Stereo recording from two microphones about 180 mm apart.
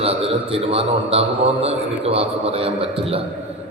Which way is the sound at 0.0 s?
35° right (ahead or behind).